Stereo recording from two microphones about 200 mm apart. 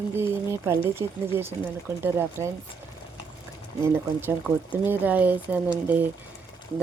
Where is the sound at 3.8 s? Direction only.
10° right (ahead or behind).